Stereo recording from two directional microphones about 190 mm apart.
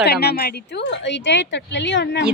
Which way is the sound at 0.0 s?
55° left (ahead or behind).